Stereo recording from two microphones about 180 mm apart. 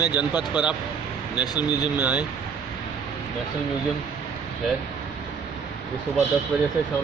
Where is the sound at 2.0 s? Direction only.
10° right (ahead or behind).